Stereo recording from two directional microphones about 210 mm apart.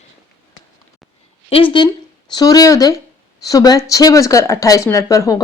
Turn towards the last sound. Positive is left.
turn(degrees=15)  # may be behind; listen again after turning